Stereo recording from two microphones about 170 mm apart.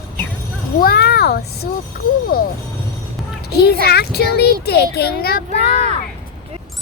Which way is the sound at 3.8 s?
70° left (ahead or behind).